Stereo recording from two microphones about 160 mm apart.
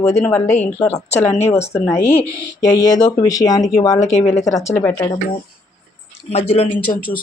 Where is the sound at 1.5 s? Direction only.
15° left (ahead or behind).